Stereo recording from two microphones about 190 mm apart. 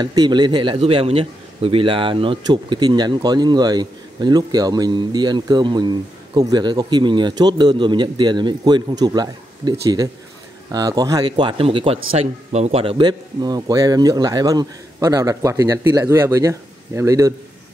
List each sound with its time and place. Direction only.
0.0 s a man's voice: 20° right (ahead or behind)